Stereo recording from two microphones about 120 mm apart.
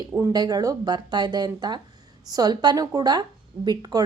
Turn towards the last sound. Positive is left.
turn(degrees=-35)  # may be behind; listen again after turning